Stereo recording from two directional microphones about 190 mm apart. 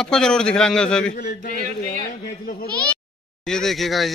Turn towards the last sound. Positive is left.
turn(degrees=0)  # may be behind; listen again after turning